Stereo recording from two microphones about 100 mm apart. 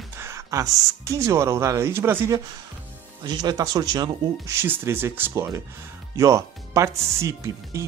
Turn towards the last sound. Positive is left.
turn(degrees=-30)  # may be behind; listen again after turning